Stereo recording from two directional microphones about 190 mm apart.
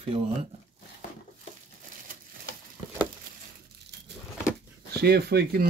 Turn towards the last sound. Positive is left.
turn(degrees=-55)  # may be behind; listen again after turning